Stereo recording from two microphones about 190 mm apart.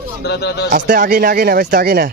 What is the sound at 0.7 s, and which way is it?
Speech, 50° right (ahead or behind).